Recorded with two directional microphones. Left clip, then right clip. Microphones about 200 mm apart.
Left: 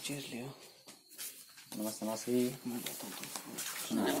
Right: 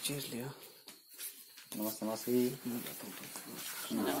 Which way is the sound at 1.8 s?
Centre (ahead or behind).